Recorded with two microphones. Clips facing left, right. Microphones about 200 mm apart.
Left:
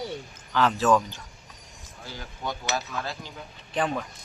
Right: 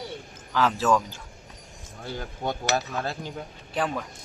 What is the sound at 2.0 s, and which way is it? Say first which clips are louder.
Speech: right 4 dB; 50° right (ahead or behind).